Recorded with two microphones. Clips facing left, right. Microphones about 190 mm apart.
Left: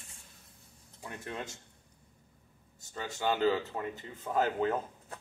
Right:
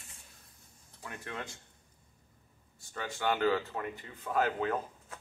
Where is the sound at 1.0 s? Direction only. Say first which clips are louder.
Left 2 dB; 20° left (ahead or behind).